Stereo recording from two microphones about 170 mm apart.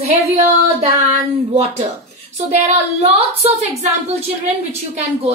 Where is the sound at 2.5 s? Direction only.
40° right (ahead or behind).